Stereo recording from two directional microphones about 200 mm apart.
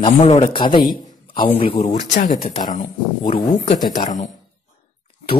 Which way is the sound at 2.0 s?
40° left (ahead or behind).